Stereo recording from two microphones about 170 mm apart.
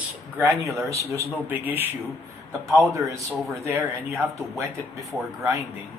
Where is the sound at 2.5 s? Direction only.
Centre (ahead or behind).